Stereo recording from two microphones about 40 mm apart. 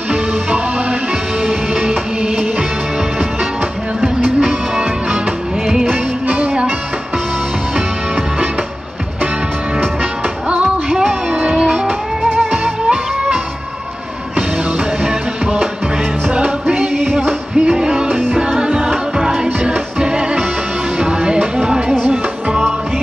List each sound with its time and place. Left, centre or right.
1.8 s music: right
4.0 s music: centre
6.2 s music: right
10.9 s music: centre
11.3 s music: right
12.4 s music: centre
16.9 s music: centre
17.6 s music: centre